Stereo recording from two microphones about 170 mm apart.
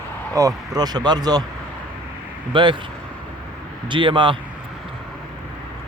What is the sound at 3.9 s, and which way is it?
Speech, 30° right (ahead or behind).